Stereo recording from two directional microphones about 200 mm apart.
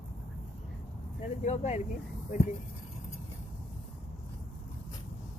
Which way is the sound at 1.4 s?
35° left (ahead or behind).